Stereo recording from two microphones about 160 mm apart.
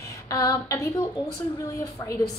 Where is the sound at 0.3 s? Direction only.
20° left (ahead or behind).